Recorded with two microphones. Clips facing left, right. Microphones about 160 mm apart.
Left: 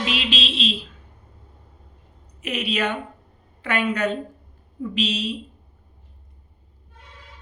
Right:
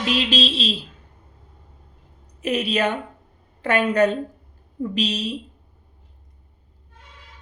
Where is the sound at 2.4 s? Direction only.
40° right (ahead or behind).